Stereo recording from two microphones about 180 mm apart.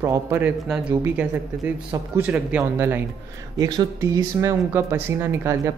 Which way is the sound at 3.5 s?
20° right (ahead or behind).